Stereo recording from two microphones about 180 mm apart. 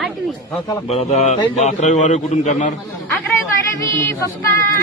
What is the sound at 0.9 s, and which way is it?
A man's voice, 35° left (ahead or behind).